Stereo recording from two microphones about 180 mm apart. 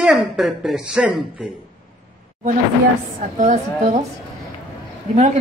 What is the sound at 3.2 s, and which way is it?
Speech, 40° right (ahead or behind).